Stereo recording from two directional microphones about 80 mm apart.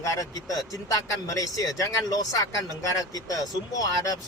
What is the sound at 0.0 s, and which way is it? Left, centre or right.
Speech, left.